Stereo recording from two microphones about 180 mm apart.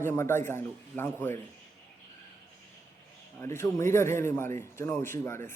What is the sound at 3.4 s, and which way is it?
A man's voice, 15° left (ahead or behind).